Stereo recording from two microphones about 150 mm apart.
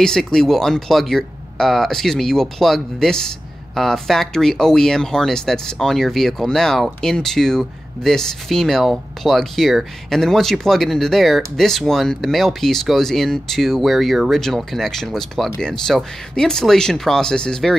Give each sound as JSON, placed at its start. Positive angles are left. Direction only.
{"t": 0.0, "sound": "speech", "side_deg": 5}